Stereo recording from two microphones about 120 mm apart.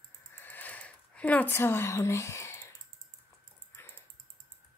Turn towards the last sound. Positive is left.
turn(degrees=20)  # may be behind; listen again after turning